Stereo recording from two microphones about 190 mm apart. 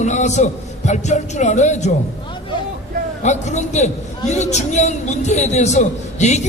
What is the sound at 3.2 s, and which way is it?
Speech, 40° left (ahead or behind).